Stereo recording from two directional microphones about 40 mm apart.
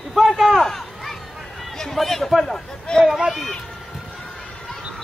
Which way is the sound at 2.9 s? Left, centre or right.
Left.